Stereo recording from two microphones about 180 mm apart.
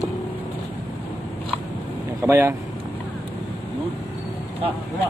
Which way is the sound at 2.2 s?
15° right (ahead or behind).